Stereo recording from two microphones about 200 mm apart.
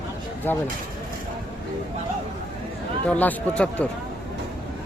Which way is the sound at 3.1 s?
5° left (ahead or behind).